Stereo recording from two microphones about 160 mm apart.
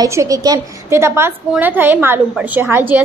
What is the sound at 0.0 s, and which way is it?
A woman's voice, 20° right (ahead or behind).